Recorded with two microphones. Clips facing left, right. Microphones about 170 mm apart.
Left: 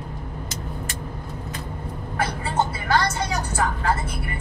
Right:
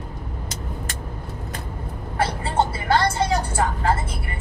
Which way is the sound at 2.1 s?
30° right (ahead or behind).